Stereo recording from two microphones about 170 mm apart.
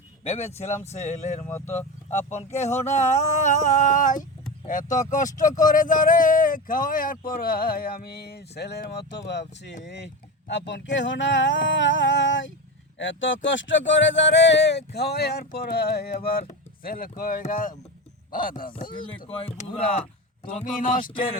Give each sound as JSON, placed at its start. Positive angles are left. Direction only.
{"t": 0.3, "sound": "speech", "side_deg": 40}
{"t": 19.4, "sound": "speech", "side_deg": 35}
{"t": 20.8, "sound": "speech", "side_deg": 50}